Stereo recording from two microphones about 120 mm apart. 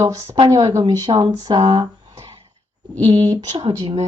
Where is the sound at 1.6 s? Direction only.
50° right (ahead or behind).